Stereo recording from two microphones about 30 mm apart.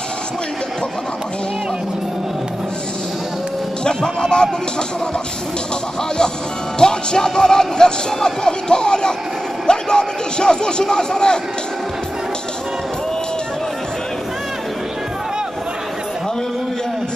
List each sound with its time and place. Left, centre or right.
3.8 s speech: left
6.8 s a man's voice: left